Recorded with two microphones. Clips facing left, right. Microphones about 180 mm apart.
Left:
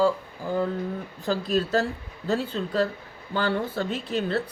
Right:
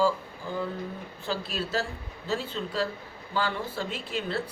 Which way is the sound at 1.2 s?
40° left (ahead or behind).